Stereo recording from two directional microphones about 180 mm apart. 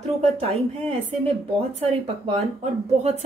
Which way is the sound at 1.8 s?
35° right (ahead or behind).